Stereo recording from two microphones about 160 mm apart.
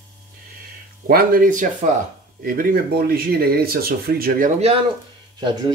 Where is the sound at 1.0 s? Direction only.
65° right (ahead or behind).